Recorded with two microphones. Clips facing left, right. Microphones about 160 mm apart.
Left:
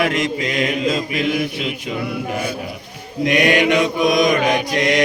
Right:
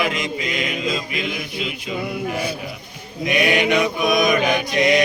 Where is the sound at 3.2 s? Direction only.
80° left.